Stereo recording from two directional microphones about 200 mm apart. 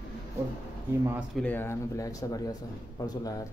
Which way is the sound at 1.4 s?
10° left (ahead or behind).